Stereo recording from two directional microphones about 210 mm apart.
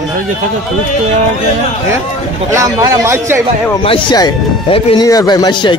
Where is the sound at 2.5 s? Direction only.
15° right (ahead or behind).